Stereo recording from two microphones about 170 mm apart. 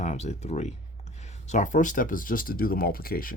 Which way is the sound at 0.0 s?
40° left (ahead or behind).